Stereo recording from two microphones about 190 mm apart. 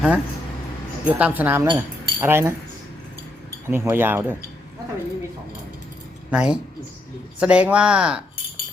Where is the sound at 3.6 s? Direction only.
10° right (ahead or behind).